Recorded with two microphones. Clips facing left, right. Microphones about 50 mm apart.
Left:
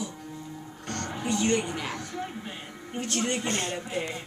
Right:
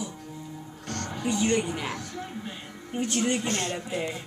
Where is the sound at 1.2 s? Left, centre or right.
Centre.